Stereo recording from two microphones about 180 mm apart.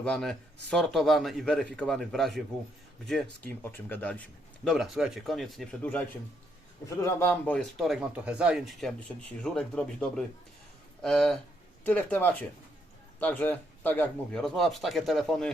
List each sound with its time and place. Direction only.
0.0 s speech: 5° left (ahead or behind)
3.6 s speech: 10° left (ahead or behind)
7.0 s speech: 10° left (ahead or behind)